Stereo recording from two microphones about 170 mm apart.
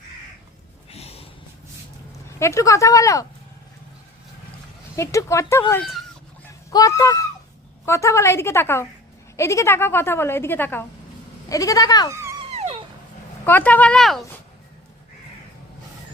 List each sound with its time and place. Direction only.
0.9 s a sound: 35° left (ahead or behind)
2.4 s speech: 15° left (ahead or behind)
4.9 s a woman's voice: 15° left (ahead or behind)
12.1 s a sound: 15° right (ahead or behind)
12.5 s dog: 35° right (ahead or behind)
13.4 s a woman's voice: 10° left (ahead or behind)